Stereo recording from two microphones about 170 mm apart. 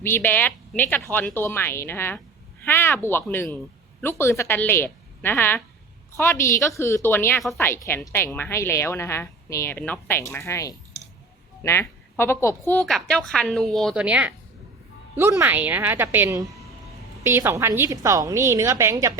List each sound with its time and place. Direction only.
0.0 s a woman's voice: 10° left (ahead or behind); by 19.2 s 15° right (ahead or behind)